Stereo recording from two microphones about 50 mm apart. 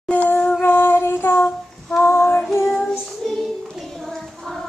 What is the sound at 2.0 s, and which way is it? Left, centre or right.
Female singing, left.